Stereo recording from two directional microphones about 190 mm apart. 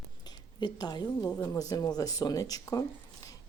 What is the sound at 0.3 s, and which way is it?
A woman's voice, 20° left (ahead or behind).